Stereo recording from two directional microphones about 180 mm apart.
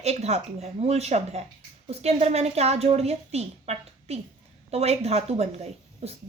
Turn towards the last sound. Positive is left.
turn(degrees=-35)  # may be behind; listen again after turning